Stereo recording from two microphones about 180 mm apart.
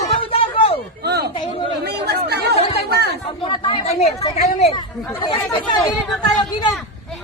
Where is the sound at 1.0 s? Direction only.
65° right (ahead or behind).